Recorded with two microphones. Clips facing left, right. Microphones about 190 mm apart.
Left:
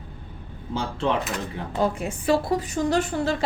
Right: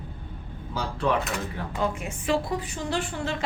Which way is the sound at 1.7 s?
35° left (ahead or behind).